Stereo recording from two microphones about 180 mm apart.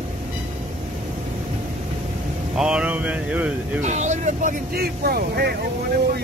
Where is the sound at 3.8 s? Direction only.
40° right (ahead or behind).